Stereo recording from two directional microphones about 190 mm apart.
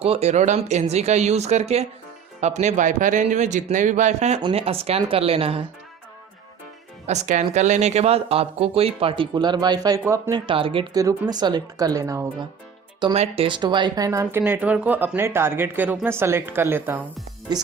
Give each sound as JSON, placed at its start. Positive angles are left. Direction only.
{"t": 0.0, "sound": "speech", "side_deg": -35}
{"t": 7.1, "sound": "speech", "side_deg": -40}
{"t": 13.1, "sound": "speech", "side_deg": -30}
{"t": 17.5, "sound": "speech", "side_deg": -20}